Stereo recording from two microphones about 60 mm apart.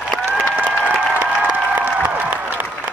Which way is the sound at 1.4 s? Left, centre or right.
Right.